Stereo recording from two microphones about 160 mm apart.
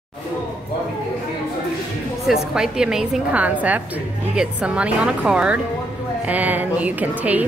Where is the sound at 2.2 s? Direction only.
5° right (ahead or behind).